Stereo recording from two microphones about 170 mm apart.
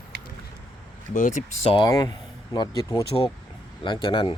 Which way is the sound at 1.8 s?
25° left (ahead or behind).